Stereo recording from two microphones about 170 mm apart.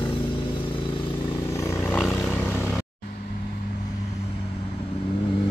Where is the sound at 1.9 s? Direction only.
Centre (ahead or behind).